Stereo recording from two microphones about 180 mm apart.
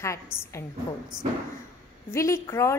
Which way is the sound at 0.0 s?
15° left (ahead or behind).